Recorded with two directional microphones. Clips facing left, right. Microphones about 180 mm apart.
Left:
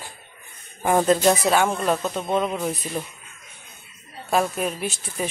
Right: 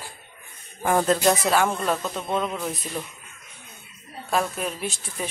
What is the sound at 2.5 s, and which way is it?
Speech, 20° left (ahead or behind).